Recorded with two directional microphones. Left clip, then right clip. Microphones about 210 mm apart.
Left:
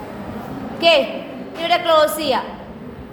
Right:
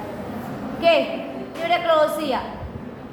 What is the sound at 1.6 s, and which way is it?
Speech, 60° left (ahead or behind).